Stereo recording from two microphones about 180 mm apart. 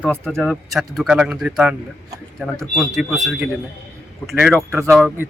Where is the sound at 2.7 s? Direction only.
Centre (ahead or behind).